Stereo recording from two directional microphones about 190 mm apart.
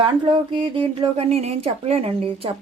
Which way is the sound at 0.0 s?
25° right (ahead or behind).